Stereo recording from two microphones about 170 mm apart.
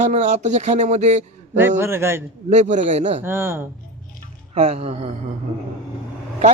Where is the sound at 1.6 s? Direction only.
15° right (ahead or behind).